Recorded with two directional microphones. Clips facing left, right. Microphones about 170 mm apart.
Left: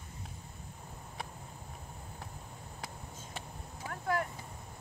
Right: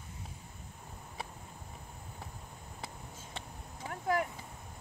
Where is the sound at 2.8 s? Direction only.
5° left (ahead or behind).